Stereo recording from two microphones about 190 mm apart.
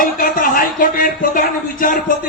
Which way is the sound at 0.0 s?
45° left (ahead or behind).